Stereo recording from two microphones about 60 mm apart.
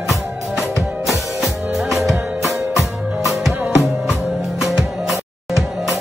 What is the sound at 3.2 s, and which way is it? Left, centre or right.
Music, centre.